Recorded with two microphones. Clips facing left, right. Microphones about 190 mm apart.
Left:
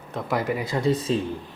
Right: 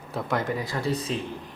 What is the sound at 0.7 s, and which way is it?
Speech, 20° left (ahead or behind).